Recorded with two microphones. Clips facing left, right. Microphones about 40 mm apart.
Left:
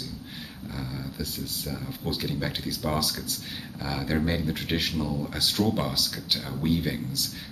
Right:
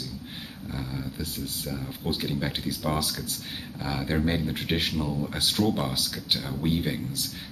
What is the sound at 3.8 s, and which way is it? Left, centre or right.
Speech, centre.